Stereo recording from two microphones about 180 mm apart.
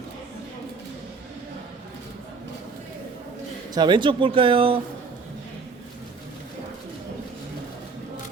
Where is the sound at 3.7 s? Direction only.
25° right (ahead or behind).